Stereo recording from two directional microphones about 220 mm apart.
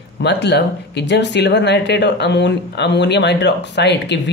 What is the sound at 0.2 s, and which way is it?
Speech, 50° left (ahead or behind).